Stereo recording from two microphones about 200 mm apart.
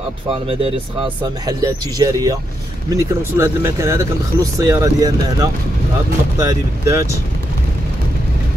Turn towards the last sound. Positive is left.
turn(degrees=-15)  # may be behind; listen again after turning